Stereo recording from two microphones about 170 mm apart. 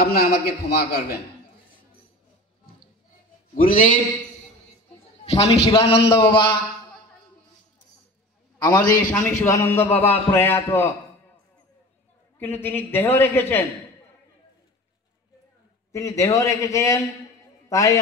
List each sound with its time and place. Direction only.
0.0 s a man's voice: 65° left (ahead or behind)
3.5 s a man's voice: 55° left (ahead or behind)
5.2 s a man's voice: 35° left (ahead or behind)
8.5 s a man's voice: 15° left (ahead or behind)
12.4 s a man's voice: 10° left (ahead or behind)
15.9 s a man's voice: 15° left (ahead or behind)